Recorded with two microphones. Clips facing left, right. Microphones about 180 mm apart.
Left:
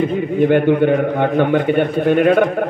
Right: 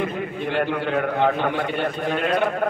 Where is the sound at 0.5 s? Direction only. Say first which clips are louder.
Left 9 dB; 55° left (ahead or behind).